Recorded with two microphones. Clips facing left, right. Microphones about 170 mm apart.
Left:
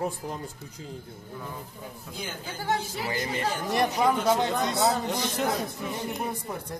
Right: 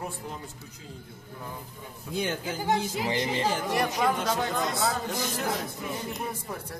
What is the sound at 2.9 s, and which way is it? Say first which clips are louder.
Speech: right 2 dB; 25° right (ahead or behind).